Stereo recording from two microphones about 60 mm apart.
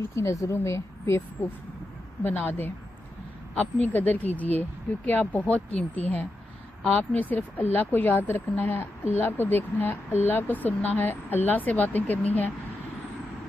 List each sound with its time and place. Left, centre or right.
0.1 s speech: left
2.2 s speech: left